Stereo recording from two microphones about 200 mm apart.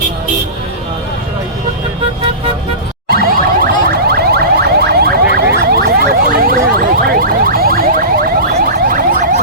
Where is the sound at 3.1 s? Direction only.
45° right (ahead or behind).